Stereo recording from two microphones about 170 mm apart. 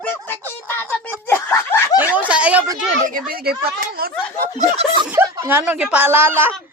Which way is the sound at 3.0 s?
55° right (ahead or behind).